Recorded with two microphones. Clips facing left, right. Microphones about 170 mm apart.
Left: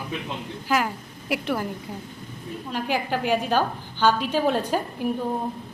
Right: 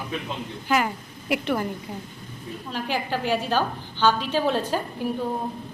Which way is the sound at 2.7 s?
10° left (ahead or behind).